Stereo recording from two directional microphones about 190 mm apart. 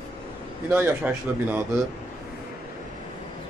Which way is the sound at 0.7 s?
10° right (ahead or behind).